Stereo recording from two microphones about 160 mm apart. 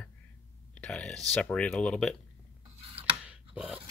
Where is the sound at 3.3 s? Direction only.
10° right (ahead or behind).